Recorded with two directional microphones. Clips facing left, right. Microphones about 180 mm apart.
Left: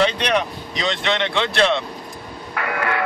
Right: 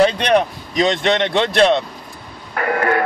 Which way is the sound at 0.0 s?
45° right (ahead or behind).